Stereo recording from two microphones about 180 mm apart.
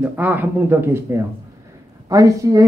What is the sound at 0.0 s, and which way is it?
A woman's voice, 10° right (ahead or behind).